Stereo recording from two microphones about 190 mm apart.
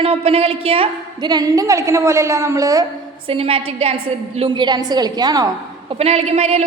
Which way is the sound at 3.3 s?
30° right (ahead or behind).